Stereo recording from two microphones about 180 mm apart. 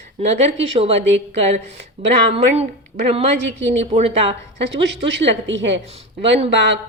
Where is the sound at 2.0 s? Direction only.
35° right (ahead or behind).